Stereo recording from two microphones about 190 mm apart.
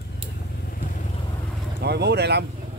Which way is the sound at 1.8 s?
60° right (ahead or behind).